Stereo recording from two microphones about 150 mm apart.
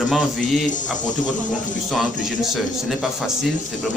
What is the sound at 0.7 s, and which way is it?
Speech, 55° left (ahead or behind).